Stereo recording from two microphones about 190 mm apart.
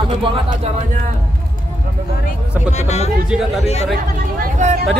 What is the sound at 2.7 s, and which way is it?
Music, 35° left (ahead or behind).